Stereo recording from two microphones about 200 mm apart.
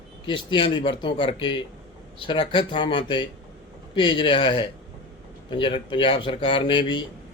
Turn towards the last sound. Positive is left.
turn(degrees=25)  # may be behind; listen again after turning